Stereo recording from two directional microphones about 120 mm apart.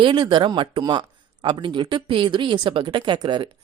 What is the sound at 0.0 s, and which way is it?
Speech, 40° right (ahead or behind).